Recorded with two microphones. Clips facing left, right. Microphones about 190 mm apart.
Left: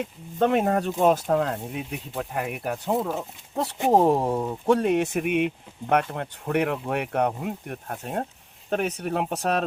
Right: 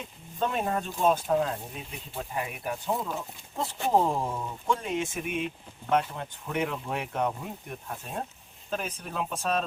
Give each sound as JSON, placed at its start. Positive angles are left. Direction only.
{"t": 0.0, "sound": "speech", "side_deg": 65}